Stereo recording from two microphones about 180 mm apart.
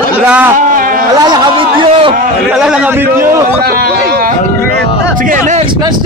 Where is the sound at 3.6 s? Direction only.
55° right (ahead or behind).